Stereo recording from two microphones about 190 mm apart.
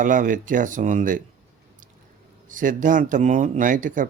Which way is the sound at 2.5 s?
45° right (ahead or behind).